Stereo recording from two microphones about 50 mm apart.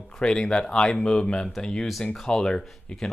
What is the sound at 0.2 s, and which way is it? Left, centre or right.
Speech, centre.